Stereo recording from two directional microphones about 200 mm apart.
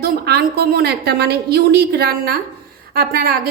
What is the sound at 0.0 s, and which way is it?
A woman's voice, 50° right (ahead or behind).